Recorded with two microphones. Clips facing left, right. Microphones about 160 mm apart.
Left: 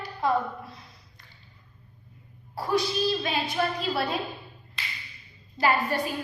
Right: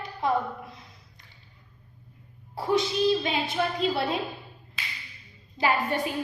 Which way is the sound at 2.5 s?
20° right (ahead or behind).